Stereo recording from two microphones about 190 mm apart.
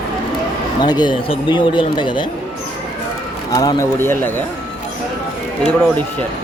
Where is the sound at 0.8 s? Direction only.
25° left (ahead or behind).